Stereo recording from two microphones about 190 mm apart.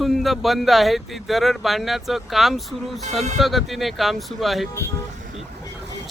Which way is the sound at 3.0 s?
40° right (ahead or behind).